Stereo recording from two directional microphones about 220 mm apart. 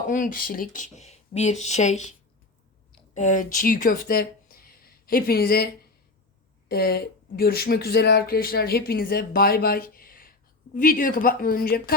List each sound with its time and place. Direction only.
0.1 s speech: 40° left (ahead or behind)
3.2 s speech: 35° left (ahead or behind)
6.7 s speech: 45° left (ahead or behind)